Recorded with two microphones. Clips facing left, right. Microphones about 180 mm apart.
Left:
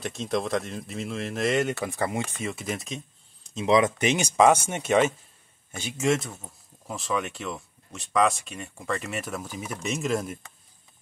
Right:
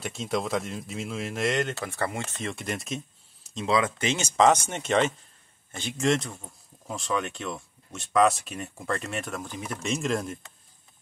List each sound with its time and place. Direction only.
0.0 s speech: centre (ahead or behind)
3.6 s speech: 20° left (ahead or behind)